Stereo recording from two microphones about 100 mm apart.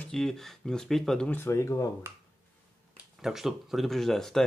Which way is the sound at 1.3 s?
25° left (ahead or behind).